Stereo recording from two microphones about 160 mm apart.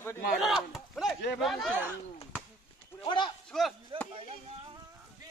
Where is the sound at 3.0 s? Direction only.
30° left (ahead or behind).